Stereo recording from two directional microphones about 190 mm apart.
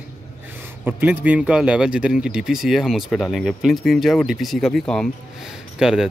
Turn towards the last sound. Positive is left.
turn(degrees=-5)  # may be behind; listen again after turning